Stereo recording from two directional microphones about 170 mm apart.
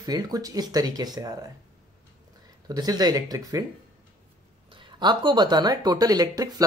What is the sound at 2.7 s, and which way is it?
Speech, 25° right (ahead or behind).